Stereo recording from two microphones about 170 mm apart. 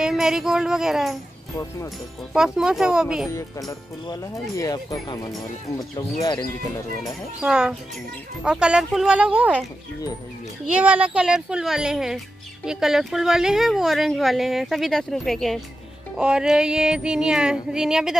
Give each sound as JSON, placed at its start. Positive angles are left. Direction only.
{"t": 0.0, "sound": "speech", "side_deg": -5}
{"t": 2.3, "sound": "a woman's voice", "side_deg": -5}
{"t": 3.3, "sound": "speech", "side_deg": 20}
{"t": 7.4, "sound": "a woman's voice", "side_deg": -5}